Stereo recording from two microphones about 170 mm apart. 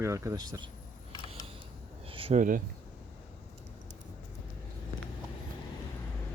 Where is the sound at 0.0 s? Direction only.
15° right (ahead or behind).